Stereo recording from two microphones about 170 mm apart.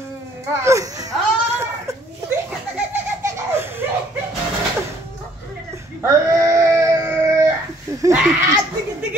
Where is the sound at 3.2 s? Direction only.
15° right (ahead or behind).